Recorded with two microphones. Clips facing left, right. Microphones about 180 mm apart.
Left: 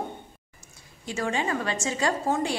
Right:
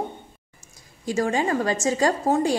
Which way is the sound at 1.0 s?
40° right (ahead or behind).